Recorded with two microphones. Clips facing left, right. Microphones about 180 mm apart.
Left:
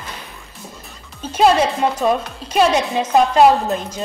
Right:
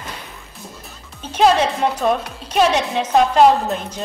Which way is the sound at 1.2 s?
5° left (ahead or behind).